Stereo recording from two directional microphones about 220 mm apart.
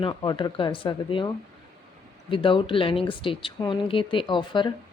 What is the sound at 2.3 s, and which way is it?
Speech, 25° left (ahead or behind).